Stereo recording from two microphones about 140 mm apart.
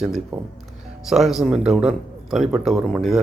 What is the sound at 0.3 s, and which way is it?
A man's voice, 5° right (ahead or behind).